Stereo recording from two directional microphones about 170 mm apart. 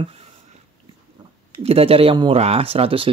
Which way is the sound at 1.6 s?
35° right (ahead or behind).